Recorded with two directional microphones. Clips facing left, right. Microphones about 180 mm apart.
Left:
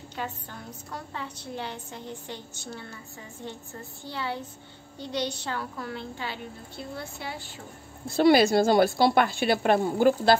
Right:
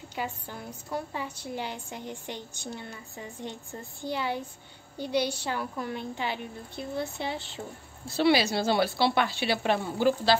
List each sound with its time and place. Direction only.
0.1 s a woman's voice: 10° right (ahead or behind)
4.0 s a woman's voice: 15° right (ahead or behind)
8.1 s speech: 50° left (ahead or behind)